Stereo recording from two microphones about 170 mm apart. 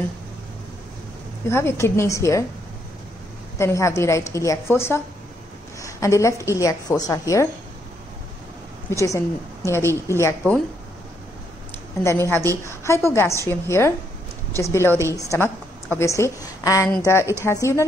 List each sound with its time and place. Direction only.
1.5 s a woman's voice: 15° left (ahead or behind)
3.5 s a woman's voice: 15° left (ahead or behind)
5.8 s a sound: 20° left (ahead or behind)
6.4 s a woman's voice: 20° left (ahead or behind)
8.9 s a woman's voice: 20° left (ahead or behind)
12.0 s a woman's voice: 15° left (ahead or behind)